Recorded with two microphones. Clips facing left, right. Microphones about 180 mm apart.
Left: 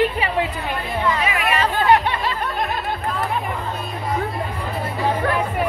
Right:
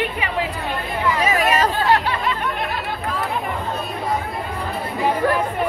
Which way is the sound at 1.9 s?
20° left (ahead or behind).